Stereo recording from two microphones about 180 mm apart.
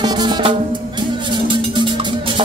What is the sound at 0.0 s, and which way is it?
Music, 25° right (ahead or behind).